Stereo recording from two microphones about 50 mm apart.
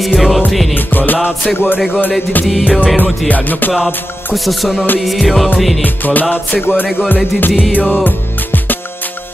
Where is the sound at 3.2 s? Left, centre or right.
Left.